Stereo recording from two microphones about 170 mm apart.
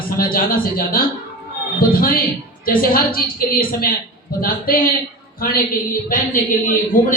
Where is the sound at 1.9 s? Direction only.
60° left (ahead or behind).